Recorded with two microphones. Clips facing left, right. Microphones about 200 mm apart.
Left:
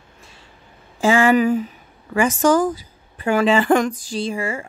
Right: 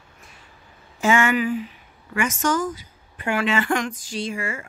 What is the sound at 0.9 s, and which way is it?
A woman's voice, 35° left (ahead or behind).